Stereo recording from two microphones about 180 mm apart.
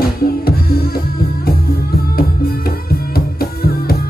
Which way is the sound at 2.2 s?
55° left (ahead or behind).